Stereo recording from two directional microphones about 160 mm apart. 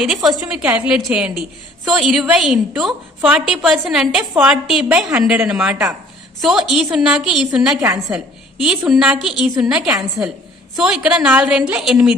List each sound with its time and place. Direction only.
0.0 s a woman's voice: centre (ahead or behind)
7.8 s a woman's voice: 20° right (ahead or behind)
8.5 s a woman's voice: 5° right (ahead or behind)